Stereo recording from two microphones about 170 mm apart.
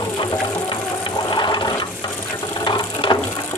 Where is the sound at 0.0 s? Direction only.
25° left (ahead or behind).